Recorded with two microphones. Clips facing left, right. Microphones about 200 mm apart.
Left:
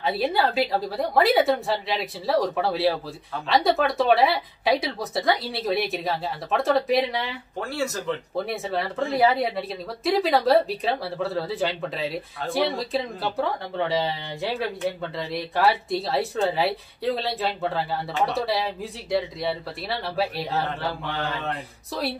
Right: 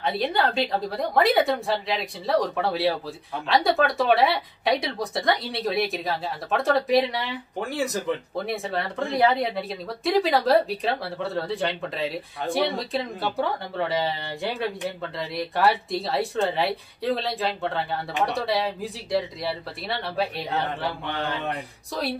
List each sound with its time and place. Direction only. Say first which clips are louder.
0.0 s speech: left 1 dB; 5° left (ahead or behind)
7.6 s speech: right 1 dB; 15° right (ahead or behind)
8.5 s speech: right 2 dB; centre (ahead or behind)